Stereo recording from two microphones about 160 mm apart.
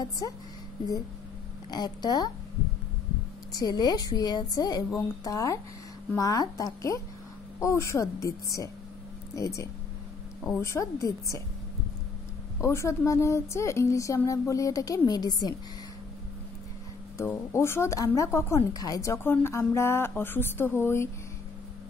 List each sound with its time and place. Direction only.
0.2 s speech: 25° left (ahead or behind)
1.7 s speech: 25° left (ahead or behind)
3.5 s speech: 25° left (ahead or behind)
12.5 s speech: 20° left (ahead or behind)
17.2 s a woman's voice: 15° left (ahead or behind)